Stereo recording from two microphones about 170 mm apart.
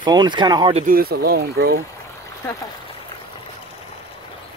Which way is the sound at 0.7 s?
55° right (ahead or behind).